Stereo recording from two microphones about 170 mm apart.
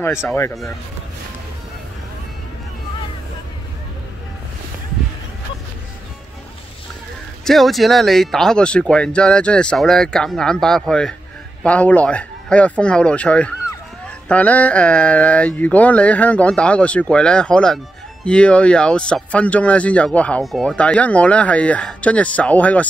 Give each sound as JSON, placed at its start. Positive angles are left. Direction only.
{"t": 0.0, "sound": "speech", "side_deg": 15}
{"t": 7.4, "sound": "speech", "side_deg": 0}